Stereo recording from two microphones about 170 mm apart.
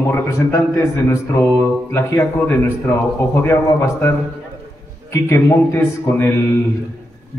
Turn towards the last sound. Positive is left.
turn(degrees=15)  # may be behind; listen again after turning